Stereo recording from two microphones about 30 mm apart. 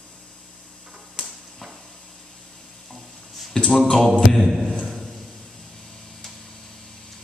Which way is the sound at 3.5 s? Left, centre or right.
Centre.